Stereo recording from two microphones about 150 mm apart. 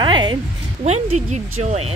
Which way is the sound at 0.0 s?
30° right (ahead or behind).